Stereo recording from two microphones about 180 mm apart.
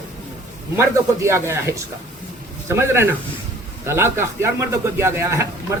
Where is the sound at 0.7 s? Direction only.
15° right (ahead or behind).